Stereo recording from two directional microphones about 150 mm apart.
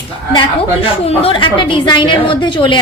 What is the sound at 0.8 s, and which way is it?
A woman's voice, 40° left (ahead or behind).